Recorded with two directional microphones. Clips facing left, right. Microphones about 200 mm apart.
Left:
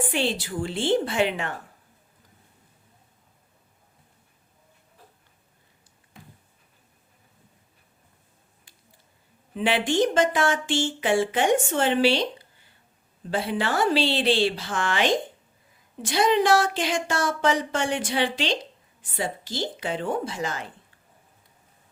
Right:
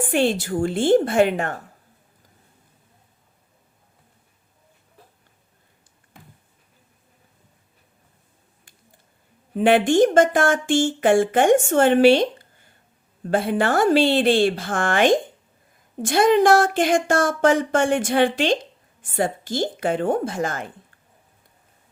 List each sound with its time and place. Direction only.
0.1 s speech: 50° right (ahead or behind)
9.6 s speech: 50° right (ahead or behind)